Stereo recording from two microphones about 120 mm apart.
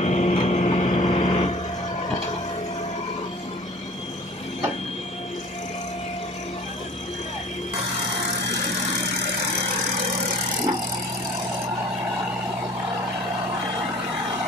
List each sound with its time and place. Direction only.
0.0 s vehicle: 70° left (ahead or behind); by 1.4 s 45° left (ahead or behind)